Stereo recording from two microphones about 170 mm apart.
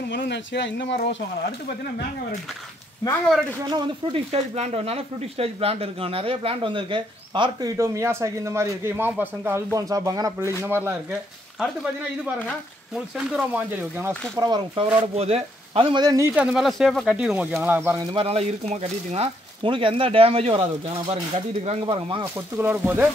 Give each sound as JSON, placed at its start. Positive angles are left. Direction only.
{"t": 0.1, "sound": "speech", "side_deg": 90}
{"t": 3.6, "sound": "speech", "side_deg": -25}
{"t": 7.7, "sound": "a man's voice", "side_deg": -15}
{"t": 12.9, "sound": "speech", "side_deg": -5}
{"t": 14.3, "sound": "speech", "side_deg": -25}
{"t": 15.1, "sound": "speech", "side_deg": -35}
{"t": 16.5, "sound": "a man's voice", "side_deg": 0}
{"t": 18.1, "sound": "speech", "side_deg": -35}
{"t": 21.8, "sound": "speech", "side_deg": -30}
{"t": 22.6, "sound": "a man's voice", "side_deg": -10}